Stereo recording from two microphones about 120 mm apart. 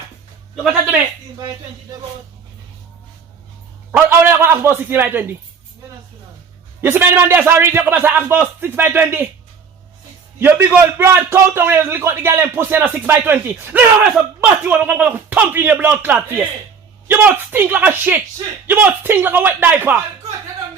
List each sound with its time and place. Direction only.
3.9 s a man's voice: 20° right (ahead or behind)
6.8 s a man's voice: 20° right (ahead or behind)
10.4 s a man's voice: 15° right (ahead or behind)